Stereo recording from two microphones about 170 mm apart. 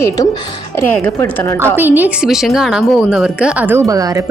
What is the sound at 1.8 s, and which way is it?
A woman's voice, 10° right (ahead or behind).